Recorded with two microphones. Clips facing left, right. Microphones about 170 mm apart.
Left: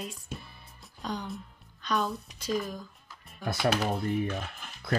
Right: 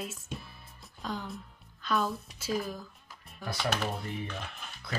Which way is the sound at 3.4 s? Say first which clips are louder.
Left 5 dB; 50° left (ahead or behind).